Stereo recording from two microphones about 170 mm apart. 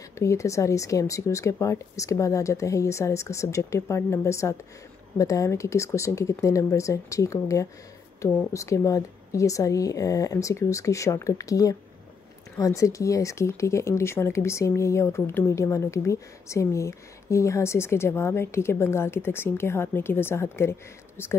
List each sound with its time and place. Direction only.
0.1 s a woman's voice: 15° left (ahead or behind)